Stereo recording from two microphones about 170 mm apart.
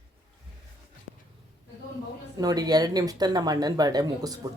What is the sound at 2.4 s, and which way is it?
Speech, 20° right (ahead or behind).